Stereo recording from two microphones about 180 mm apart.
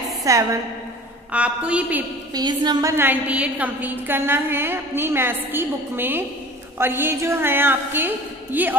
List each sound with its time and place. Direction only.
0.2 s a woman's voice: 20° right (ahead or behind)
1.3 s a woman's voice: 5° right (ahead or behind)
2.3 s a woman's voice: 25° right (ahead or behind)